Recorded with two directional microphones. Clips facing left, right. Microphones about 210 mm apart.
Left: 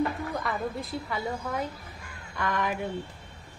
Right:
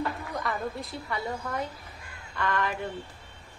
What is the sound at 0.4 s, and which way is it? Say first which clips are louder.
A woman's voice: left 1 dB; centre (ahead or behind).